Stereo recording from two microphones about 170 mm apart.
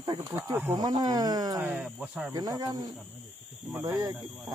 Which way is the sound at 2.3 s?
20° right (ahead or behind).